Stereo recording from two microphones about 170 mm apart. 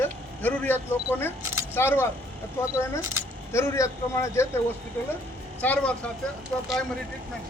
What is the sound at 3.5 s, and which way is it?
Speech, 15° left (ahead or behind).